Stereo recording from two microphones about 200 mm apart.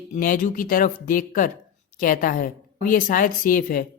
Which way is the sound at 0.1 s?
40° left (ahead or behind).